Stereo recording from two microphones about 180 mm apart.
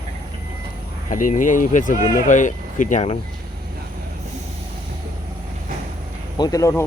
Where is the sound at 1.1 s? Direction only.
45° left (ahead or behind).